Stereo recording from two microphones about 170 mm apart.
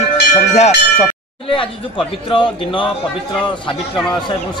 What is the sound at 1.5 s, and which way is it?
A man's voice, 30° left (ahead or behind).